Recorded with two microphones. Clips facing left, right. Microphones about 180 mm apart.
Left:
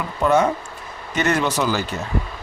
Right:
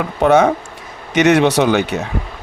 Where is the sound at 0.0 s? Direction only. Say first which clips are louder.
Right 6 dB; 75° right (ahead or behind).